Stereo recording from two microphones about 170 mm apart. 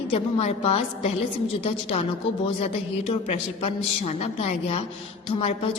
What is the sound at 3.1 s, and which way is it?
A woman's voice, 35° left (ahead or behind).